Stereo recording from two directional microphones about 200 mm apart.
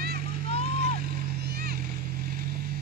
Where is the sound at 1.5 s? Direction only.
50° right (ahead or behind).